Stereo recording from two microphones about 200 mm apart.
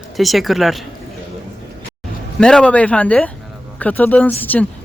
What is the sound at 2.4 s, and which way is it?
Speech, 5° left (ahead or behind).